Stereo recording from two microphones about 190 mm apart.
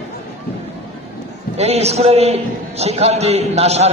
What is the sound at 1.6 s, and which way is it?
A man's voice, 35° right (ahead or behind).